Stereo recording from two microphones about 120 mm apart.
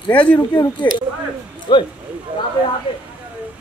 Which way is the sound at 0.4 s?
30° left (ahead or behind).